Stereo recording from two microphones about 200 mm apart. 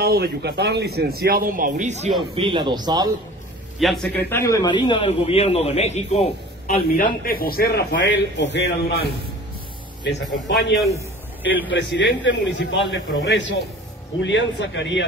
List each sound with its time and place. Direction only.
0.0 s speech: 50° right (ahead or behind); by 2.1 s 35° right (ahead or behind)
2.1 s a man's voice: 25° right (ahead or behind)
3.8 s a man's voice: centre (ahead or behind)
4.3 s a man's voice: 15° left (ahead or behind); by 6.2 s 35° left (ahead or behind)
6.7 s a man's voice: 45° left (ahead or behind); by 9.0 s 60° left (ahead or behind)
10.0 s a man's voice: 60° left (ahead or behind)